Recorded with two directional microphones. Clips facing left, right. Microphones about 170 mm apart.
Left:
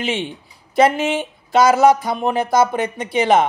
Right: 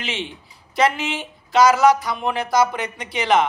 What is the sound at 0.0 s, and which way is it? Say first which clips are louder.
Speech: left 6 dB; 50° left (ahead or behind).